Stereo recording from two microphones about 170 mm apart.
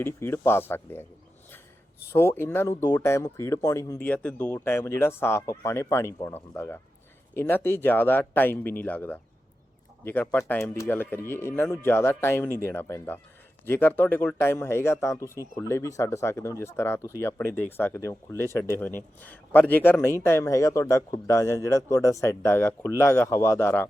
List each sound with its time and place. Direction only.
0.0 s speech: 15° left (ahead or behind)
2.1 s speech: 15° left (ahead or behind)